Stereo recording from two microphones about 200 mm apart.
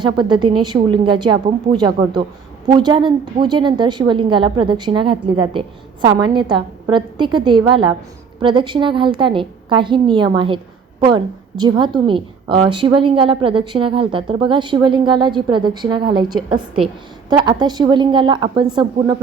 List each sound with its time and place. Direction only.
0.0 s a woman's voice: 25° right (ahead or behind)